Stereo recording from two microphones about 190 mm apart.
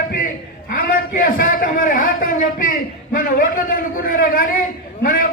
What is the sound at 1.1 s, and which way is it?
A man's voice, 45° left (ahead or behind).